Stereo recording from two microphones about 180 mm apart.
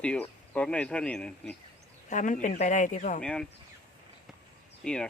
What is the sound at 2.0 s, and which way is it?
Speech, 45° left (ahead or behind).